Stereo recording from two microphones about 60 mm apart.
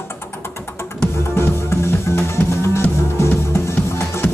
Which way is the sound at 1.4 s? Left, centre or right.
Left.